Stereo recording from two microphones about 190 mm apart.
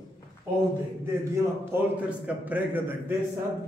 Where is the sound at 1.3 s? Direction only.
10° right (ahead or behind).